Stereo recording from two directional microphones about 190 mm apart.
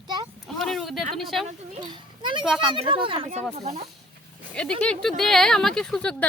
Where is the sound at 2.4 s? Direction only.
Centre (ahead or behind).